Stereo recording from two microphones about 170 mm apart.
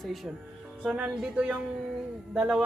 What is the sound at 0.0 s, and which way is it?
A man's voice, centre (ahead or behind).